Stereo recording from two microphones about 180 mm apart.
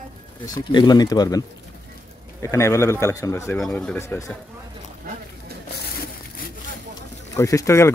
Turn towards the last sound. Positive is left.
turn(degrees=15)  # may be behind; listen again after turning